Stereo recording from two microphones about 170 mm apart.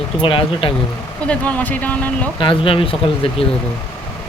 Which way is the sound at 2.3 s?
30° left (ahead or behind).